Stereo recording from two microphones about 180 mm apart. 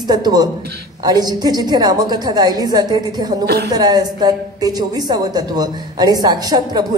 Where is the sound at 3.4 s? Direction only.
65° right (ahead or behind).